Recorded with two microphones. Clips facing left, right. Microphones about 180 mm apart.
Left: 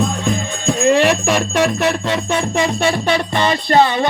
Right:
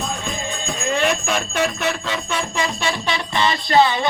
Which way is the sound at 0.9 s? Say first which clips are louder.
Left 6 dB; 70° left (ahead or behind).